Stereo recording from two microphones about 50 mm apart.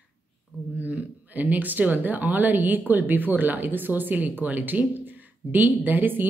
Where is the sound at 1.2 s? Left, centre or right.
Right.